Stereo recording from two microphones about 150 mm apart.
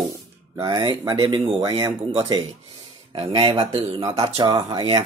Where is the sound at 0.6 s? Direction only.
30° right (ahead or behind).